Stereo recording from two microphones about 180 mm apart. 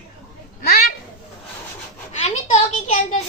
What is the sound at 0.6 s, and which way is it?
Speech, 55° left (ahead or behind).